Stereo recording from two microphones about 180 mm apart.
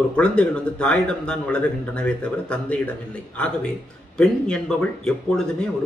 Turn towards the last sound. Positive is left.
turn(degrees=5)  # may be behind; listen again after turning